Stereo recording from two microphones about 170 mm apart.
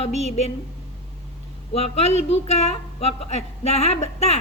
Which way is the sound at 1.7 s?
35° left (ahead or behind).